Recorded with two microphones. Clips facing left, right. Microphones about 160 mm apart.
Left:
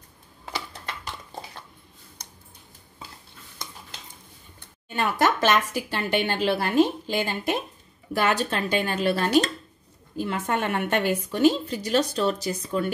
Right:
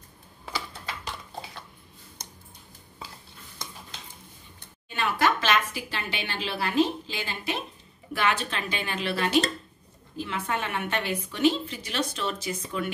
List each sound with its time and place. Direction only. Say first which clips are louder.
4.8 s a woman's voice: left 2 dB; 45° left (ahead or behind)